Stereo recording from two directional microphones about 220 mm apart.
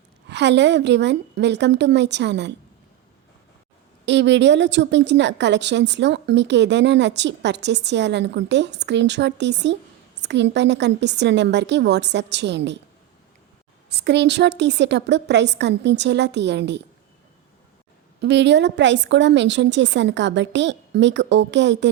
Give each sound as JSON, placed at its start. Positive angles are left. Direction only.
{"t": 0.3, "sound": "a woman's voice", "side_deg": -50}
{"t": 4.0, "sound": "a woman's voice", "side_deg": -50}
{"t": 13.9, "sound": "a woman's voice", "side_deg": -50}
{"t": 18.2, "sound": "a woman's voice", "side_deg": -50}